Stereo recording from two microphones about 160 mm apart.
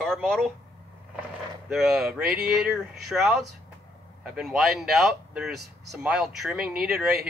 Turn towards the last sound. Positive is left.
turn(degrees=-5)  # may be behind; listen again after turning